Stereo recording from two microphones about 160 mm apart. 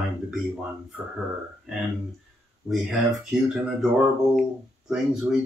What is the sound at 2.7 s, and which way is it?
Speech, centre (ahead or behind).